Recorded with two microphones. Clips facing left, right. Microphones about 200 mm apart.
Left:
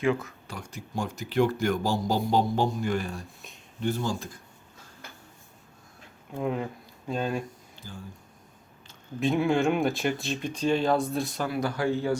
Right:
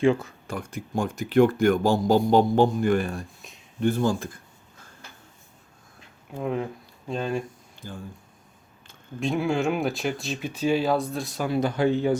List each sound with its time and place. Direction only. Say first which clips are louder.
0.0 s speech: right 5 dB; 30° right (ahead or behind)
0.4 s speech: right 7 dB; 50° right (ahead or behind)
6.3 s speech: right 1 dB; centre (ahead or behind)
7.8 s speech: right 5 dB; 55° right (ahead or behind)
9.2 s speech: left 1 dB; centre (ahead or behind)
11.4 s speech: right 7 dB; 25° right (ahead or behind)